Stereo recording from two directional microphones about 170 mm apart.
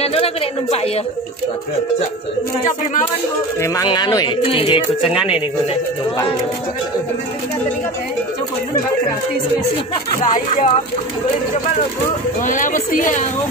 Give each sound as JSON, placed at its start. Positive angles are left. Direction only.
{"t": 0.0, "sound": "a woman's voice", "side_deg": 35}
{"t": 2.6, "sound": "a woman's voice", "side_deg": 50}
{"t": 3.6, "sound": "speech", "side_deg": 20}
{"t": 5.0, "sound": "speech", "side_deg": -5}
{"t": 10.2, "sound": "a woman's voice", "side_deg": 50}
{"t": 12.4, "sound": "a woman's voice", "side_deg": 50}